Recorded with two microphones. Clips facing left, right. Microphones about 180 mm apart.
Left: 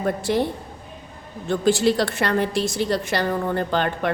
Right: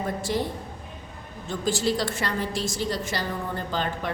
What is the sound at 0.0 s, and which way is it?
Speech, 65° left (ahead or behind).